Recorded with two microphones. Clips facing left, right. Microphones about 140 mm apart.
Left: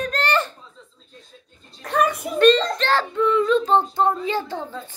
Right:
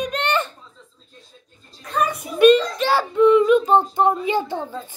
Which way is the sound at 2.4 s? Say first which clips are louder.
Right 3 dB; 10° right (ahead or behind).